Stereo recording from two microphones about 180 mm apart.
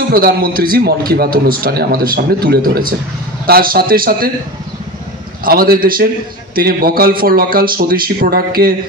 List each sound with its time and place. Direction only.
0.1 s a man's voice: 55° right (ahead or behind)
5.4 s a man's voice: 55° right (ahead or behind)